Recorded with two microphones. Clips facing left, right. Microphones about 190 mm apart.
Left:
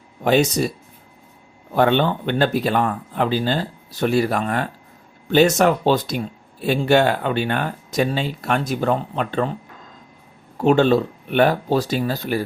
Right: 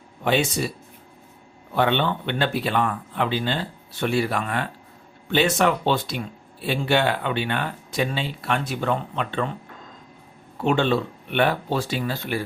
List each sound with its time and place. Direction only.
0.3 s speech: 40° left (ahead or behind)
1.7 s speech: 45° left (ahead or behind)
10.6 s speech: 40° left (ahead or behind)